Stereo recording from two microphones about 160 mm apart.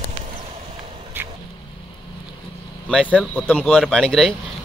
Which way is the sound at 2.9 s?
5° left (ahead or behind).